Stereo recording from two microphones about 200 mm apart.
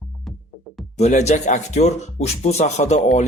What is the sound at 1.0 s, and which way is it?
Speech, 35° left (ahead or behind).